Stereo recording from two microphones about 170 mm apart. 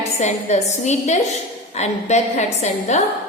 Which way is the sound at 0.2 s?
40° left (ahead or behind).